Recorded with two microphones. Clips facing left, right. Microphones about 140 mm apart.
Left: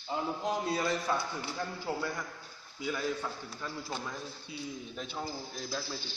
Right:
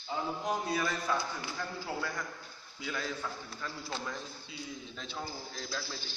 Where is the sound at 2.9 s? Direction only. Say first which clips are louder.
Left 3 dB; 15° left (ahead or behind).